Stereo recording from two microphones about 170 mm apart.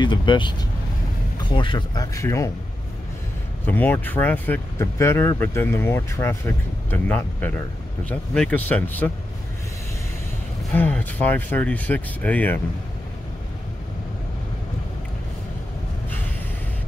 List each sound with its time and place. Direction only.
0.0 s speech: 30° left (ahead or behind)
3.6 s speech: 10° left (ahead or behind)
10.7 s speech: 10° left (ahead or behind)